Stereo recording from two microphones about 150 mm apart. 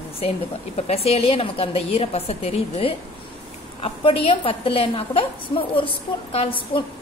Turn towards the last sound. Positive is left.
turn(degrees=35)  # may be behind; listen again after turning